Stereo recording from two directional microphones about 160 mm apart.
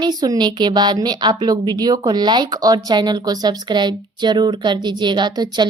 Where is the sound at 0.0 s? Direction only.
25° right (ahead or behind).